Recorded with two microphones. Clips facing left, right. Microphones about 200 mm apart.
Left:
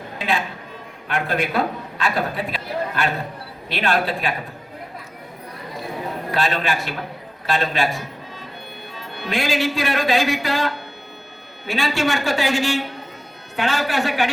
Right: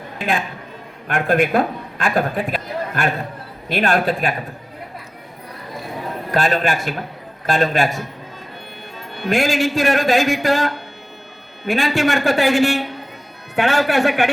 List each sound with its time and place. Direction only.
1.0 s a man's voice: 50° right (ahead or behind)
6.3 s a man's voice: 50° right (ahead or behind)
9.2 s a man's voice: 50° right (ahead or behind)